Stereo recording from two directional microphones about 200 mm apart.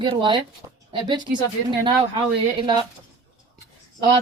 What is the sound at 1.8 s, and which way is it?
Speech, 20° right (ahead or behind).